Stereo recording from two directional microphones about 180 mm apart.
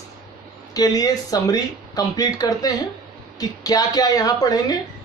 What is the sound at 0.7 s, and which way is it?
Speech, 20° left (ahead or behind).